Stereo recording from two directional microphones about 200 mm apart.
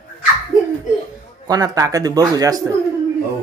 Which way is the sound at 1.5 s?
20° right (ahead or behind).